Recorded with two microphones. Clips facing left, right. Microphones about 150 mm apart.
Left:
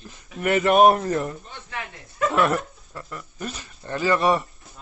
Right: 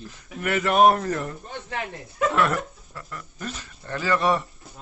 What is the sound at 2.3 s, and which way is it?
Speech, 20° left (ahead or behind).